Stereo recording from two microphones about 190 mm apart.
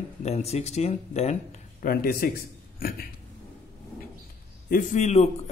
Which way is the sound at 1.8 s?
50° left (ahead or behind).